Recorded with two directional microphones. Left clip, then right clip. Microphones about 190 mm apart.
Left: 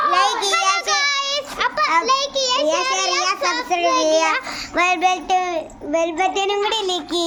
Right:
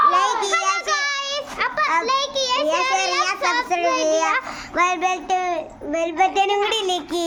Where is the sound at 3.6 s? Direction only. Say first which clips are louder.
Left 2 dB; 5° right (ahead or behind).